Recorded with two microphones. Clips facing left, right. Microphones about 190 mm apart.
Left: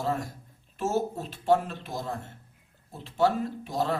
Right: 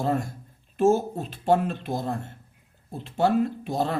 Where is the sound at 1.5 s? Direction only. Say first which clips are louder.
Right 2 dB; 55° right (ahead or behind).